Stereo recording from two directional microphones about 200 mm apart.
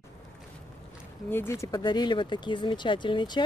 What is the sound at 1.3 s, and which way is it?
Speech, 10° left (ahead or behind).